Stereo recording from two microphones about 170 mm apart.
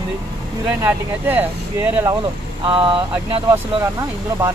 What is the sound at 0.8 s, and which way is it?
Speech, 10° right (ahead or behind).